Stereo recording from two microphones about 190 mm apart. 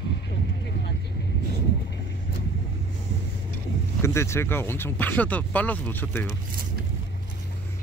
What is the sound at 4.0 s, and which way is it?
Speech, 15° left (ahead or behind).